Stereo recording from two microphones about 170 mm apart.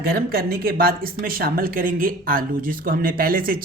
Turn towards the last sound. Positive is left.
turn(degrees=-55)  # may be behind; listen again after turning